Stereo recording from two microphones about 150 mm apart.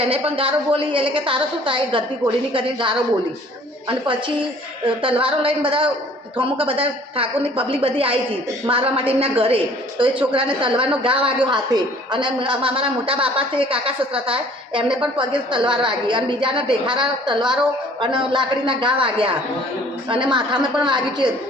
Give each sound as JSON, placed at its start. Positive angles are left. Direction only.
{"t": 0.0, "sound": "a woman's voice", "side_deg": -40}